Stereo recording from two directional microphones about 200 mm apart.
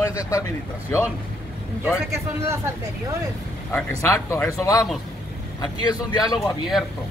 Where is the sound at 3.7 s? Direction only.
10° left (ahead or behind).